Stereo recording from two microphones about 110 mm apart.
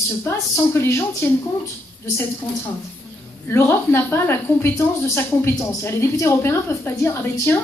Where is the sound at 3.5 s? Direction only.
20° left (ahead or behind).